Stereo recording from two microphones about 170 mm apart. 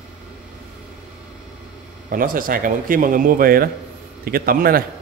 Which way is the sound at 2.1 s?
55° right (ahead or behind).